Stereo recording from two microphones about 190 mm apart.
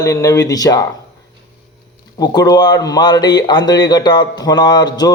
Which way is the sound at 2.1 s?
20° left (ahead or behind).